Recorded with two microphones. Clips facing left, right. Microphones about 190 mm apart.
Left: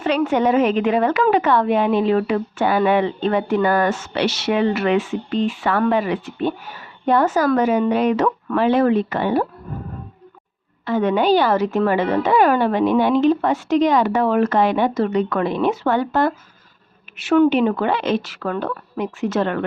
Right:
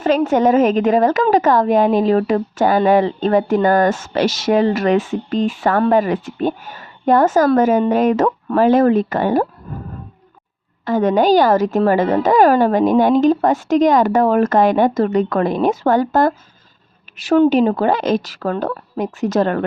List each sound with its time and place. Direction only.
0.3 s a woman's voice: 45° right (ahead or behind)
10.8 s a woman's voice: 40° right (ahead or behind)